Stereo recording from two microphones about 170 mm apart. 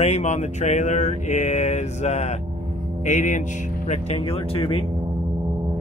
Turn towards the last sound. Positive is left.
turn(degrees=35)  # may be behind; listen again after turning